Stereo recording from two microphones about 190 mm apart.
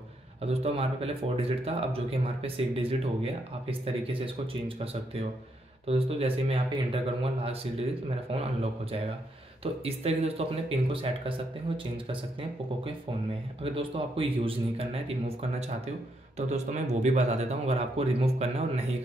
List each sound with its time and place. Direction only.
0.4 s speech: 30° right (ahead or behind)
9.6 s speech: 30° right (ahead or behind)